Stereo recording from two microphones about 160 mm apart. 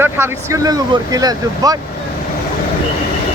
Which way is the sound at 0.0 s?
15° right (ahead or behind).